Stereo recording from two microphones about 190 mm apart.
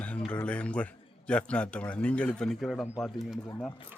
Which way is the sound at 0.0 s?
5° left (ahead or behind).